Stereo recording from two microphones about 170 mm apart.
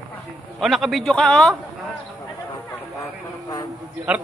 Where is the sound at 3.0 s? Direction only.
20° left (ahead or behind).